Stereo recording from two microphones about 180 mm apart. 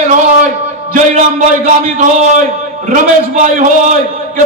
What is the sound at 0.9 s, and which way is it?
A man's voice, 40° right (ahead or behind).